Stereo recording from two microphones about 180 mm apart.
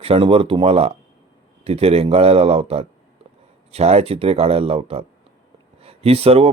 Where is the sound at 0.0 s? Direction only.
30° right (ahead or behind).